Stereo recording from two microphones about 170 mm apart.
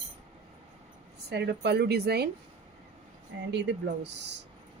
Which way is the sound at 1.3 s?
80° right.